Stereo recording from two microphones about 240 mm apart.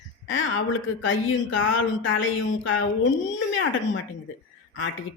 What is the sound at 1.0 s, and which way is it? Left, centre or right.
Speech, left.